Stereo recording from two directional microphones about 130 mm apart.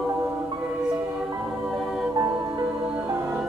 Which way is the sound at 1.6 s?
5° right (ahead or behind).